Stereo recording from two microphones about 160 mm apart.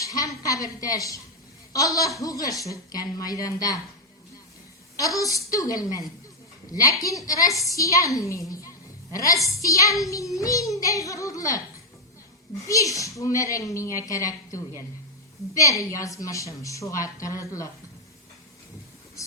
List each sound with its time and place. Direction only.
0.0 s a sound: 20° left (ahead or behind)
0.4 s a woman's voice: 20° left (ahead or behind)
4.9 s a woman's voice: 20° left (ahead or behind)
12.6 s a woman's voice: 20° left (ahead or behind)